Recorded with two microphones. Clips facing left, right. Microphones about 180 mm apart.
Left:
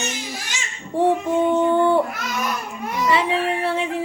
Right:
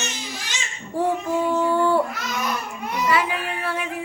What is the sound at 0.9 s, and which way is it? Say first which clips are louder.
Female singing: left 4 dB; 25° left (ahead or behind).